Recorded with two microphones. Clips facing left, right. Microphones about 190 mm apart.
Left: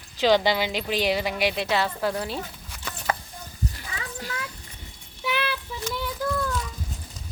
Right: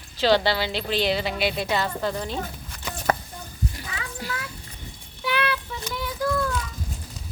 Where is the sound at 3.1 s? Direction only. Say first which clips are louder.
Right 4 dB; 45° right (ahead or behind).